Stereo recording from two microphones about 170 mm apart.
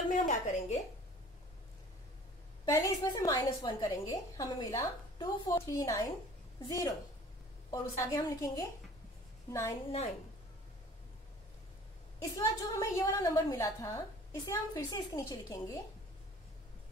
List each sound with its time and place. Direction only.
0.1 s a woman's voice: 45° left (ahead or behind)
2.6 s a woman's voice: 25° left (ahead or behind)
7.7 s a woman's voice: 20° left (ahead or behind)
12.2 s a woman's voice: 20° left (ahead or behind)